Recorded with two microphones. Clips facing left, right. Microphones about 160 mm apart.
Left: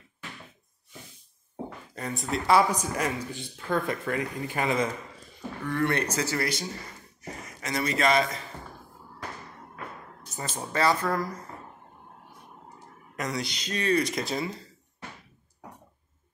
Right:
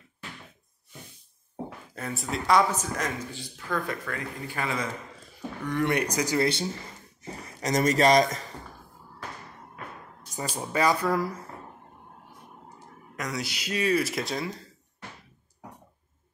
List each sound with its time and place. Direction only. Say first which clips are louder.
2.0 s speech: left 1 dB; centre (ahead or behind)
2.7 s a woman's voice: left 2 dB; 10° left (ahead or behind)
3.5 s speech: left 3 dB; 25° left (ahead or behind)
5.7 s speech: right 1 dB; 15° right (ahead or behind)
7.2 s speech: right 5 dB; 30° right (ahead or behind)
10.3 s speech: right 2 dB; 10° right (ahead or behind)
13.1 s speech: left 1 dB; centre (ahead or behind)